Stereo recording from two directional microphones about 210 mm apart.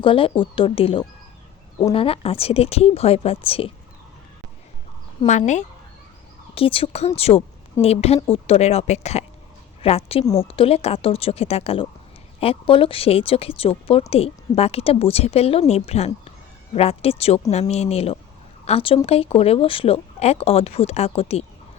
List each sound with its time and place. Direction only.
0.0 s speech: 25° left (ahead or behind)
5.2 s speech: 35° left (ahead or behind)